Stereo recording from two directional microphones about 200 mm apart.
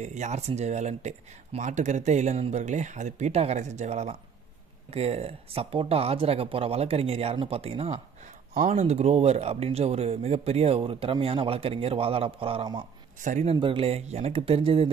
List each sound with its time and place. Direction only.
0.0 s speech: 35° right (ahead or behind)
13.2 s speech: 35° right (ahead or behind)